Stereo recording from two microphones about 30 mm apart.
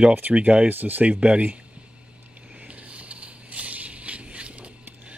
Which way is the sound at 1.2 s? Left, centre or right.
Right.